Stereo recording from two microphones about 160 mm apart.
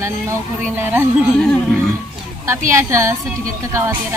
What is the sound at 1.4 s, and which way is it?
Speech, 5° left (ahead or behind).